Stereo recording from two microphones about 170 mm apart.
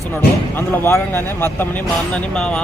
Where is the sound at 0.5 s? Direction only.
15° left (ahead or behind).